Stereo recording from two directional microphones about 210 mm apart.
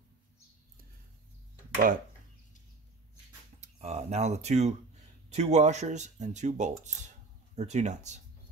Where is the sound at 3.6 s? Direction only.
30° right (ahead or behind).